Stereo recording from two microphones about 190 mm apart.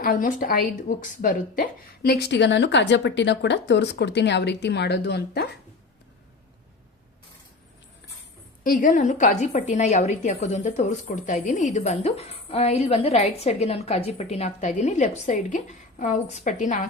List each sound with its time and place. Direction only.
0.0 s a woman's voice: 45° left (ahead or behind)
8.6 s a woman's voice: 45° left (ahead or behind)